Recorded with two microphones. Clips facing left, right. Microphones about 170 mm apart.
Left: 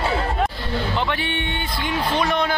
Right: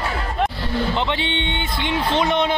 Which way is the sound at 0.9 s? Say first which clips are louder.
Right 1 dB; 20° right (ahead or behind).